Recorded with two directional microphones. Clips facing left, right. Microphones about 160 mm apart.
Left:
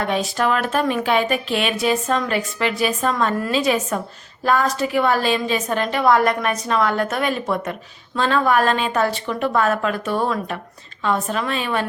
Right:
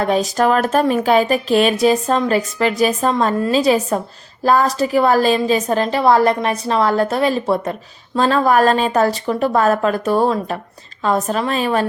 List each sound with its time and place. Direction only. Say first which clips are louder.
0.0 s a woman's voice: right 5 dB; 40° right (ahead or behind)